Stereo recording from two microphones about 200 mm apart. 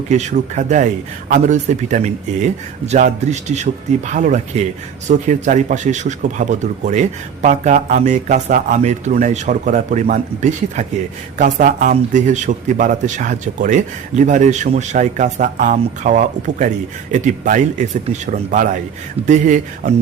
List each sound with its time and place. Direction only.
0.1 s a man's voice: 35° right (ahead or behind)